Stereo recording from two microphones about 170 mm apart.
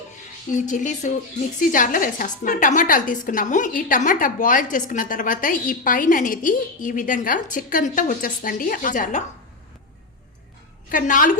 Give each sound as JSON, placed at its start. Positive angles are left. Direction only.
{"t": 0.5, "sound": "a woman's voice", "side_deg": 45}
{"t": 10.8, "sound": "a woman's voice", "side_deg": 50}